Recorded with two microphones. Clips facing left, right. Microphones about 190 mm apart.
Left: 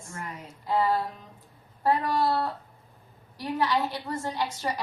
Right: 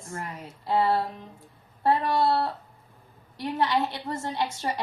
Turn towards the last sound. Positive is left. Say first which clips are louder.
# right 1 dB
turn(degrees=-25)  # may be behind; listen again after turning